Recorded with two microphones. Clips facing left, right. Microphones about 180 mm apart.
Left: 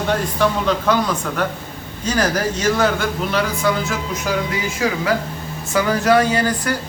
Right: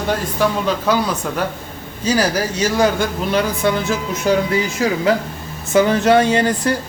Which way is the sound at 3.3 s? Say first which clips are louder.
Right 3 dB; 25° right (ahead or behind).